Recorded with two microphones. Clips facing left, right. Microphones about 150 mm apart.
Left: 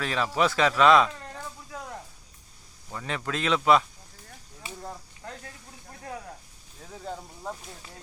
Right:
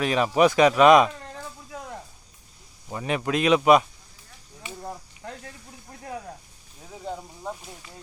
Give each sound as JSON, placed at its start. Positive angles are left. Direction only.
{"t": 0.0, "sound": "speech", "side_deg": -15}
{"t": 2.9, "sound": "speech", "side_deg": -20}
{"t": 4.8, "sound": "a sound", "side_deg": -20}
{"t": 6.9, "sound": "speech", "side_deg": -10}